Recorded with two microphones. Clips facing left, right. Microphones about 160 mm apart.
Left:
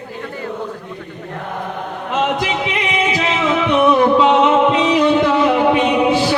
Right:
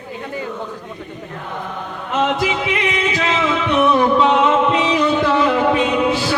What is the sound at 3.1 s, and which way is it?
Music, 15° left (ahead or behind).